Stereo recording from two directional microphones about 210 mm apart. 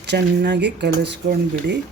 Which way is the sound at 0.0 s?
55° right (ahead or behind).